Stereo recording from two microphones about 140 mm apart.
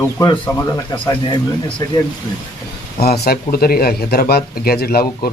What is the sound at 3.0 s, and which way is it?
Speech, 90° left.